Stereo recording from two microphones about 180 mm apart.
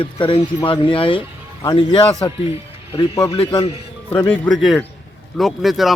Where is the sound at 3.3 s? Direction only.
30° left (ahead or behind).